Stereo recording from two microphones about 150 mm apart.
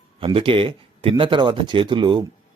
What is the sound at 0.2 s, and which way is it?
Speech, 35° right (ahead or behind).